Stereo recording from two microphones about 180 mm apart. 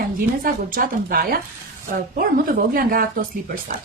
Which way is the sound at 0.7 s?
50° right (ahead or behind).